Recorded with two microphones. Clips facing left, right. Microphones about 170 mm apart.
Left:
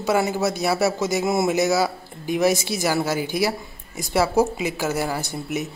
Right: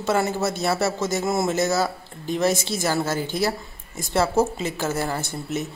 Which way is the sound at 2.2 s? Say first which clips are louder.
Left 2 dB; 15° left (ahead or behind).